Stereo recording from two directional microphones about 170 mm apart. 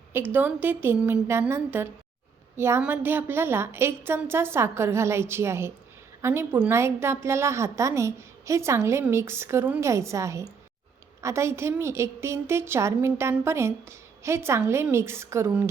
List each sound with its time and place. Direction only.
0.1 s a woman's voice: 10° right (ahead or behind)